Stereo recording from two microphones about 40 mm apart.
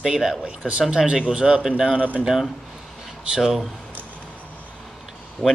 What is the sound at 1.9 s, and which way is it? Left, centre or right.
Speech, right.